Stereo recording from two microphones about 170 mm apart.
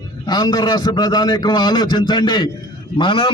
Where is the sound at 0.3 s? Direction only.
25° left (ahead or behind).